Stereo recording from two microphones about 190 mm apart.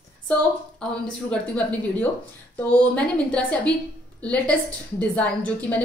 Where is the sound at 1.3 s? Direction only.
5° left (ahead or behind).